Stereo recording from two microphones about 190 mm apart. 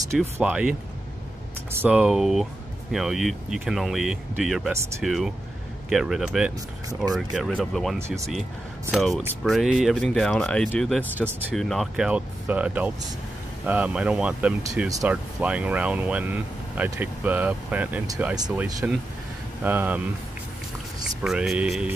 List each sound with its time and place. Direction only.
0.1 s speech: 5° right (ahead or behind)
14.6 s speech: 15° right (ahead or behind)
15.0 s speech: 5° right (ahead or behind)
21.2 s speech: 5° right (ahead or behind)